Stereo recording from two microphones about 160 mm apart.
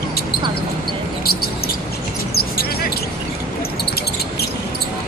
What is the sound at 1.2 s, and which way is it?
Basketball bounce, 75° left (ahead or behind).